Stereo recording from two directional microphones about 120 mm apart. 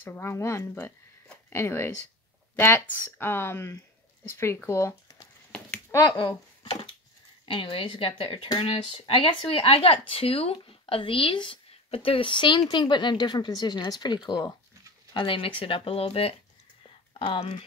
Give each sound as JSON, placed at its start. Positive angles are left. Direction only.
{"t": 0.0, "sound": "speech", "side_deg": 20}
{"t": 5.9, "sound": "a sound", "side_deg": 30}
{"t": 6.1, "sound": "speech", "side_deg": 35}
{"t": 7.4, "sound": "speech", "side_deg": 45}
{"t": 15.1, "sound": "speech", "side_deg": 45}